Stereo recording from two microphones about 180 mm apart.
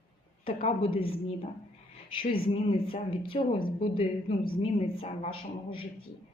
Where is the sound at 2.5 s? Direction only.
30° left (ahead or behind).